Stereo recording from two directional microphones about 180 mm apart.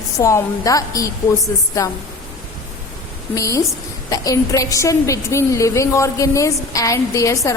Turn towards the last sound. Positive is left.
turn(degrees=15)  # may be behind; listen again after turning